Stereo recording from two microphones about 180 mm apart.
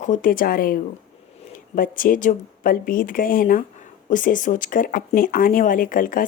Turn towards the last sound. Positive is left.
turn(degrees=50)  # may be behind; listen again after turning